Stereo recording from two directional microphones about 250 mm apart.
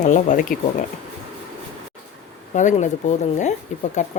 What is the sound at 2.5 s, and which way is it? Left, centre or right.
Speech, left.